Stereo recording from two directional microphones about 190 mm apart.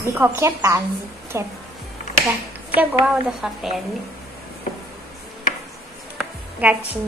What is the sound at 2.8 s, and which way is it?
A woman's voice, 5° right (ahead or behind).